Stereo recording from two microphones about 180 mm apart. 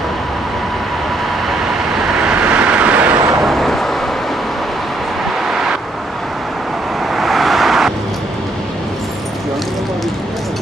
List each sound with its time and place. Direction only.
1.7 s vehicle: 5° right (ahead or behind)
3.4 s vehicle: centre (ahead or behind)
5.5 s vehicle: centre (ahead or behind)
7.2 s vehicle: centre (ahead or behind)